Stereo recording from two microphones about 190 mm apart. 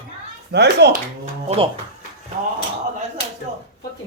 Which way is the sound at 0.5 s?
60° right (ahead or behind).